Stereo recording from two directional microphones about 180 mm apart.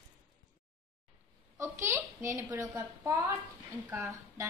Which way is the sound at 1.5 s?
15° right (ahead or behind).